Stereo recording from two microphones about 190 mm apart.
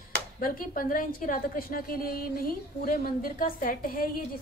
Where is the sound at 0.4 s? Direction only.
45° left (ahead or behind).